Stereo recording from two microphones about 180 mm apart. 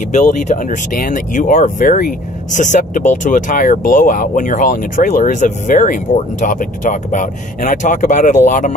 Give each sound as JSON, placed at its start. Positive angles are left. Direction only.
{"t": 0.1, "sound": "speech", "side_deg": 45}